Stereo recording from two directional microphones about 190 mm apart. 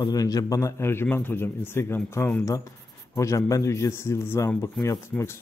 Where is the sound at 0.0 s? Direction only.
20° left (ahead or behind).